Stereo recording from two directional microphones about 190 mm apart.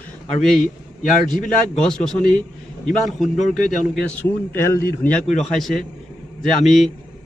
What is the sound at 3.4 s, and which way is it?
Speech, 40° left (ahead or behind).